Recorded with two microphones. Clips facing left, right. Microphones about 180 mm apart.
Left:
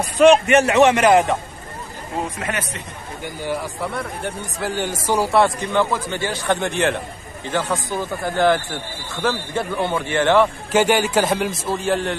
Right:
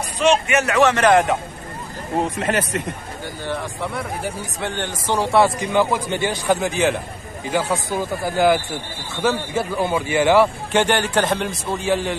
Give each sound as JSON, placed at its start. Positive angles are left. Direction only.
{"t": 0.5, "sound": "a man's voice", "side_deg": 30}
{"t": 1.0, "sound": "speech", "side_deg": 0}
{"t": 2.1, "sound": "speech", "side_deg": -20}
{"t": 3.4, "sound": "speech", "side_deg": 10}
{"t": 5.6, "sound": "a man's voice", "side_deg": -10}
{"t": 10.7, "sound": "speech", "side_deg": 5}